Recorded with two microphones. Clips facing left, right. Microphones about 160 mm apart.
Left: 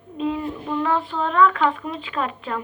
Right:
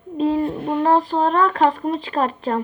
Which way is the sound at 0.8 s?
35° right (ahead or behind).